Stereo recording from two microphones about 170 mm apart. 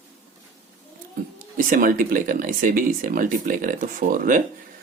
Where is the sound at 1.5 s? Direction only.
55° right (ahead or behind).